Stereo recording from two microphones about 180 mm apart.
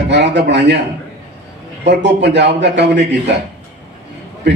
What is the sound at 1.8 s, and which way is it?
A man's voice, 75° right (ahead or behind).